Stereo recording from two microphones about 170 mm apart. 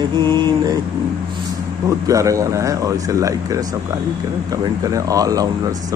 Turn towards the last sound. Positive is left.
turn(degrees=-20)  # may be behind; listen again after turning